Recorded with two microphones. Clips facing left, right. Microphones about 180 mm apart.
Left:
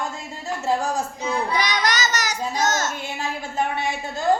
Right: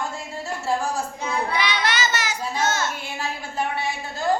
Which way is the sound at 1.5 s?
40° left (ahead or behind).